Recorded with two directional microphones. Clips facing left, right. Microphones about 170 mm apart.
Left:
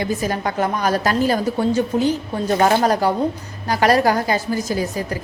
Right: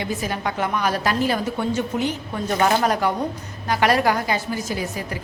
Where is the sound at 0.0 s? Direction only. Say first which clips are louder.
Left 4 dB; 40° left (ahead or behind).